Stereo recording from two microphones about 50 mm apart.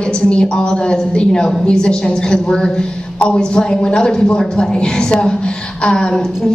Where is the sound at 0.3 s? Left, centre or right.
Centre.